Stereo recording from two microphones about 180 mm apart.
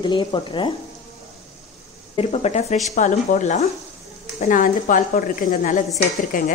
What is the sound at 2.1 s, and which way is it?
Speech, 35° left (ahead or behind).